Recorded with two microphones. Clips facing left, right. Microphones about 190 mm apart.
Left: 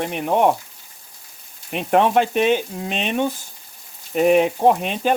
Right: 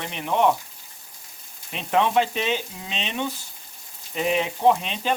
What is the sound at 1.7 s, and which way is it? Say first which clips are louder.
Frying: left 4 dB; 55° left (ahead or behind).